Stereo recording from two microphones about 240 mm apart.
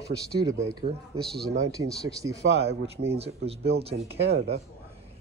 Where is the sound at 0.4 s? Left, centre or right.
Centre.